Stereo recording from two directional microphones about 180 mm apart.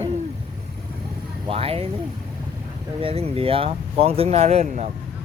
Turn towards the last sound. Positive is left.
turn(degrees=-40)  # may be behind; listen again after turning